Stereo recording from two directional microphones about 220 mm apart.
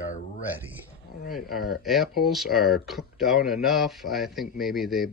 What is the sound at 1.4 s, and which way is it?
Speech, 45° left (ahead or behind).